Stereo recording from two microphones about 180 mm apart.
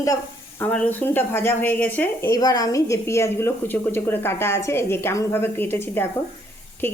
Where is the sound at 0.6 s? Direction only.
10° left (ahead or behind).